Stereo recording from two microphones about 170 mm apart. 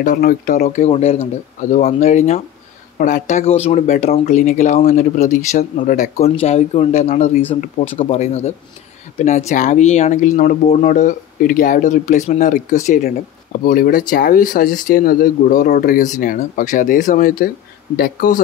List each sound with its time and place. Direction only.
0.0 s speech: 55° left (ahead or behind)